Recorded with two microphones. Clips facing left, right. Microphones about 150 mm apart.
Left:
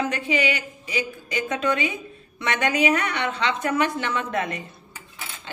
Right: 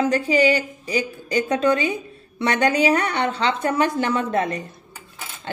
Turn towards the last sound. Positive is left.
turn(degrees=-35)  # may be behind; listen again after turning